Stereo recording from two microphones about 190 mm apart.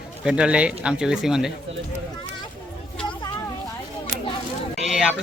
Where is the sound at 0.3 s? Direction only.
5° right (ahead or behind).